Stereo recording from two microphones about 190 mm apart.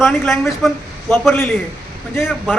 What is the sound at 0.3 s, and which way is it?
A man's voice, centre (ahead or behind).